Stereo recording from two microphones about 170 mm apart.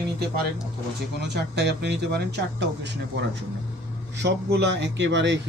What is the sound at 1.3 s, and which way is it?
Speech, 80° right.